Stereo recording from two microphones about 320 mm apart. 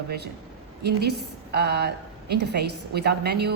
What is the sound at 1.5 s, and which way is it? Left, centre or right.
A woman's voice, right.